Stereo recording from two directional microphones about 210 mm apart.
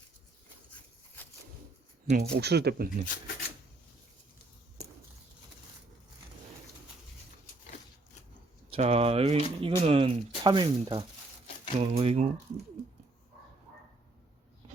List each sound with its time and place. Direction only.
2.0 s speech: 35° right (ahead or behind)
8.7 s speech: 30° right (ahead or behind)